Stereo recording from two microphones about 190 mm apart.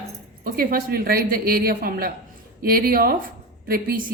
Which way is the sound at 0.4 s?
50° right (ahead or behind).